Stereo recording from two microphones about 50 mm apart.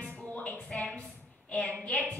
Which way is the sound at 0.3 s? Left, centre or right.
Left.